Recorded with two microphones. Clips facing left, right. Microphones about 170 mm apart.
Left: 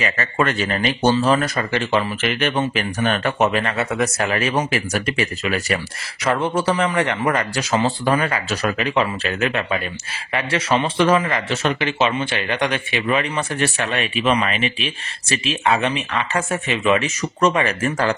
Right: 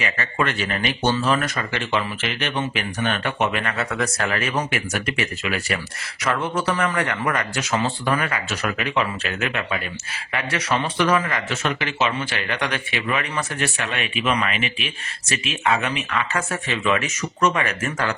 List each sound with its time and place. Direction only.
0.0 s speech: 40° left (ahead or behind)
3.5 s speech: 25° left (ahead or behind)
16.6 s speech: 20° left (ahead or behind)
17.4 s speech: 30° left (ahead or behind)